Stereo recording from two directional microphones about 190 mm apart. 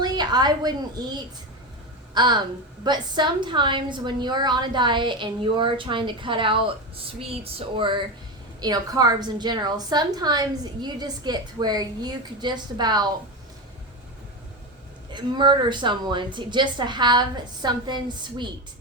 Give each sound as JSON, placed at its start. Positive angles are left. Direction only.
{"t": 0.0, "sound": "a woman's voice", "side_deg": -20}
{"t": 15.1, "sound": "a woman's voice", "side_deg": -25}